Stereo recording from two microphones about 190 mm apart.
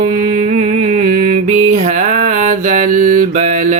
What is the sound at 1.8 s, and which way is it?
Mantra, 45° right (ahead or behind).